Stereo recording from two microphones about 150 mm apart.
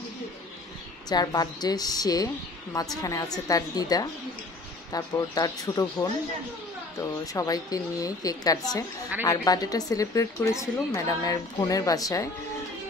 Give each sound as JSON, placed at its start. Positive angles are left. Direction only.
{"t": 1.0, "sound": "a woman's voice", "side_deg": 25}